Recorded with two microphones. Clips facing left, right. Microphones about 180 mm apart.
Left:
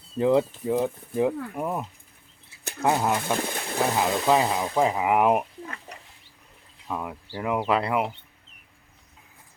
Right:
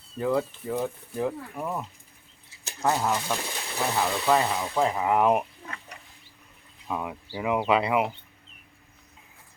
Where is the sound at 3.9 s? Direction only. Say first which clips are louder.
Left 1 dB; 15° left (ahead or behind).